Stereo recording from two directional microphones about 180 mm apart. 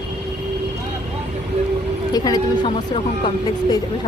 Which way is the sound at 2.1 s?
20° left (ahead or behind).